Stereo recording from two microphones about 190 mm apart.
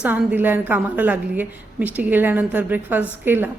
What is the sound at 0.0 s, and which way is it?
A woman's voice, 10° right (ahead or behind).